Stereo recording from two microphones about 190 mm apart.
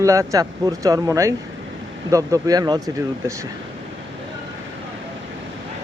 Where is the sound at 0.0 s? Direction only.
15° right (ahead or behind).